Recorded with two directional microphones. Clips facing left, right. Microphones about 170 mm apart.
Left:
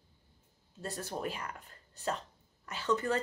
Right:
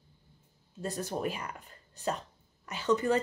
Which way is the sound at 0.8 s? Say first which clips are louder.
Right 4 dB; 15° right (ahead or behind).